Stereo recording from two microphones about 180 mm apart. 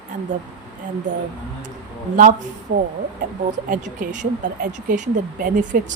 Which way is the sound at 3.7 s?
45° right (ahead or behind).